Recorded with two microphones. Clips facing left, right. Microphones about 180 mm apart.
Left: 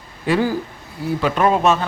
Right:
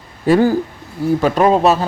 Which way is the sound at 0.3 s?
45° right (ahead or behind).